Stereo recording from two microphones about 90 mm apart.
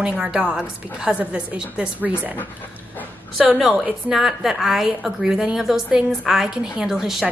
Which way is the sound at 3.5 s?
5° right (ahead or behind).